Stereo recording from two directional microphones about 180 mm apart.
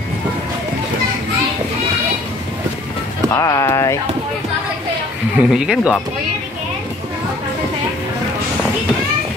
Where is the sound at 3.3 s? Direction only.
15° left (ahead or behind).